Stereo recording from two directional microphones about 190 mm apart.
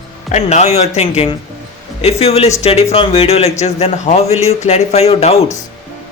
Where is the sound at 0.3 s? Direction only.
35° left (ahead or behind).